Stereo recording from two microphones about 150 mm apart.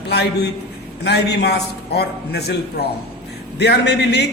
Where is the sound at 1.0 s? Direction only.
90° left.